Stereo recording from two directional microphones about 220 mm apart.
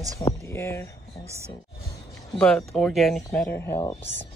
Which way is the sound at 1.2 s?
15° right (ahead or behind).